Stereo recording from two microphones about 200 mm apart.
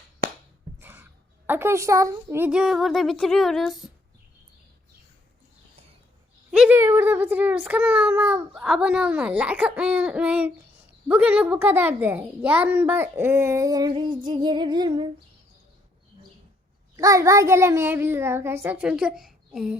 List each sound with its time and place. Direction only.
0.8 s a sound: 10° right (ahead or behind)
1.5 s a woman's voice: 10° right (ahead or behind)
6.5 s a child's voice: 5° right (ahead or behind); by 15.1 s 20° right (ahead or behind)
17.0 s a child's voice: 15° right (ahead or behind)